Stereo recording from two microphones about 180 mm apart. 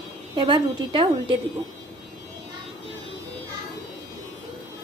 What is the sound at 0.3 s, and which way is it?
A woman's voice, 25° right (ahead or behind).